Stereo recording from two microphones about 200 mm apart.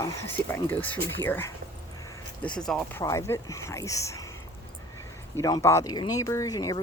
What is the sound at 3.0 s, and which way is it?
Speech, 15° left (ahead or behind).